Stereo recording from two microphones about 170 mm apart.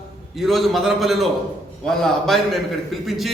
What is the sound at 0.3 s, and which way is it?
A man's voice, centre (ahead or behind).